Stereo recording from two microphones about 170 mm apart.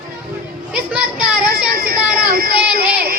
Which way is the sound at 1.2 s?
60° right (ahead or behind).